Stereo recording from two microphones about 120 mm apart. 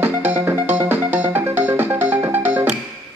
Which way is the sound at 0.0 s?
20° right (ahead or behind).